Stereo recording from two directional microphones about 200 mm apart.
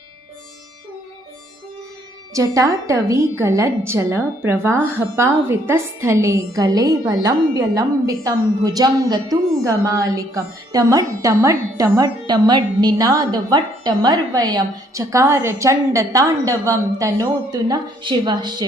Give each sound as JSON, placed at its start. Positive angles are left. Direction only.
{"t": 2.3, "sound": "a woman's voice", "side_deg": -15}